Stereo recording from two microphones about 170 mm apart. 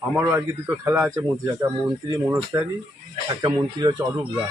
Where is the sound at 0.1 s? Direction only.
10° right (ahead or behind).